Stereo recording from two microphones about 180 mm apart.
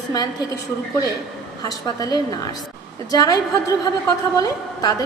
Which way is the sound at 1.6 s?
20° left (ahead or behind).